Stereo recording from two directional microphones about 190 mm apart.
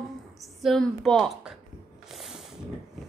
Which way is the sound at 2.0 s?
Centre (ahead or behind).